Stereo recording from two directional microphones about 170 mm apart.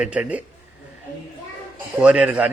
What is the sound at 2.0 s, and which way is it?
Speech, 5° right (ahead or behind).